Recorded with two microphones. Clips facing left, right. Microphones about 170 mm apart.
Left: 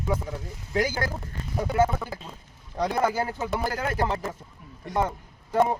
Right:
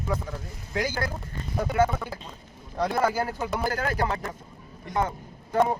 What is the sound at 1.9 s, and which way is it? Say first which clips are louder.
Speech: left 1 dB; 5° left (ahead or behind).